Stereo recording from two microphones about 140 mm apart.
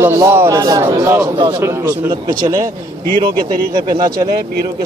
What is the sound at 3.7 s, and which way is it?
Speech, 30° right (ahead or behind).